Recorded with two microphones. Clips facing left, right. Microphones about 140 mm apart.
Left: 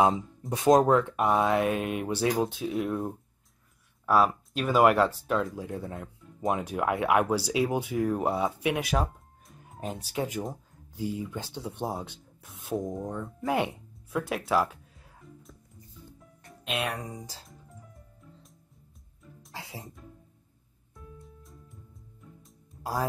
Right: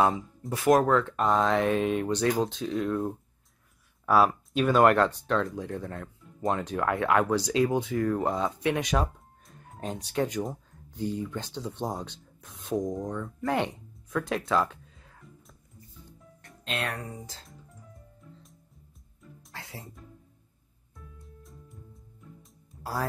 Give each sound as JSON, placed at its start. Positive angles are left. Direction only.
{"t": 0.5, "sound": "speech", "side_deg": 20}
{"t": 4.0, "sound": "speech", "side_deg": 0}
{"t": 13.4, "sound": "music", "side_deg": 5}
{"t": 16.6, "sound": "speech", "side_deg": 10}
{"t": 19.5, "sound": "music", "side_deg": 15}
{"t": 21.2, "sound": "music", "side_deg": 0}